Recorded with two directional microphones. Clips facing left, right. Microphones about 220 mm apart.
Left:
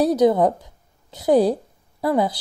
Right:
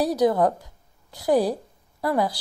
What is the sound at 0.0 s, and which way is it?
A woman's voice, 20° left (ahead or behind).